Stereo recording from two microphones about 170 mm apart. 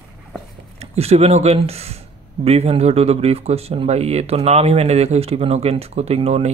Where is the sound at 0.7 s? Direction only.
35° right (ahead or behind).